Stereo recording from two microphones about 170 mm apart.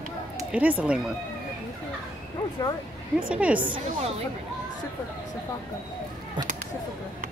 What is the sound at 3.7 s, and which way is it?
Speech, 35° right (ahead or behind).